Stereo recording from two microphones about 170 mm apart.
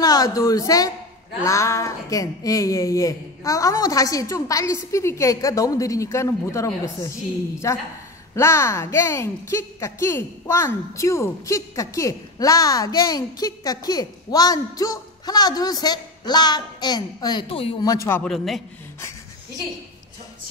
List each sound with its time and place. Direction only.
0.0 s a woman's voice: 20° left (ahead or behind)
18.2 s a man's voice: centre (ahead or behind)